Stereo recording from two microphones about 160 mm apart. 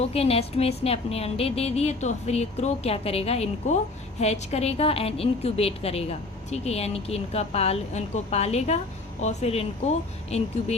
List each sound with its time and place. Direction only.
0.0 s a woman's voice: 40° left (ahead or behind)